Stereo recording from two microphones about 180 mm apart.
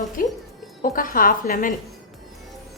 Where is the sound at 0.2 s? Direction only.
50° left (ahead or behind).